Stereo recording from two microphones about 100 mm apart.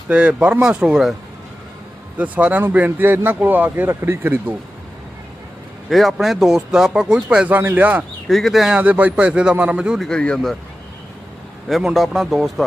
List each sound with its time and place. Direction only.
0.1 s speech: 10° right (ahead or behind)
2.1 s speech: 15° right (ahead or behind)
5.9 s speech: centre (ahead or behind); by 8.0 s 15° right (ahead or behind)
8.3 s speech: centre (ahead or behind)
8.8 s speech: 15° right (ahead or behind)
10.0 s speech: 10° left (ahead or behind)
11.7 s speech: 5° right (ahead or behind)